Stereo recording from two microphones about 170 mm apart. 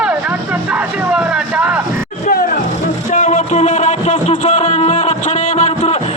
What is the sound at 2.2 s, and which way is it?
Music, 55° left (ahead or behind).